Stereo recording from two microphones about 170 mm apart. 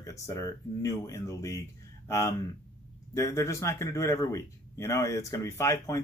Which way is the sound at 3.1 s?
15° left (ahead or behind).